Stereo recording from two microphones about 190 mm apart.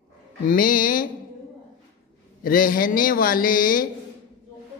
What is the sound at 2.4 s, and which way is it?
A man's voice, 45° left (ahead or behind).